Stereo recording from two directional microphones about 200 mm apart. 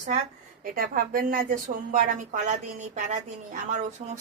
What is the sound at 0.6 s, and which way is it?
A woman's voice, 45° right (ahead or behind).